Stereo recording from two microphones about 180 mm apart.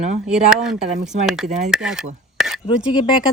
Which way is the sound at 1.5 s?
40° right (ahead or behind).